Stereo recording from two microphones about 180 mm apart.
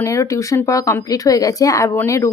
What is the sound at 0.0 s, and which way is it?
Speech, 15° left (ahead or behind).